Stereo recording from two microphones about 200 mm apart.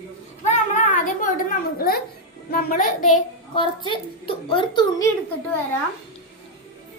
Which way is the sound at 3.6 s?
25° left (ahead or behind).